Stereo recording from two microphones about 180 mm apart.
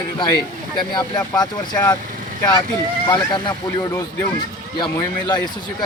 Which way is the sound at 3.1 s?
25° left (ahead or behind).